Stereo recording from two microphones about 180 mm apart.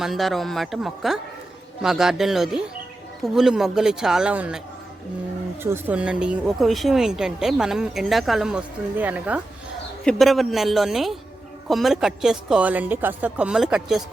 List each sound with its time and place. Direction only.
0.0 s speech: centre (ahead or behind)
5.6 s speech: 10° right (ahead or behind)
10.0 s speech: centre (ahead or behind)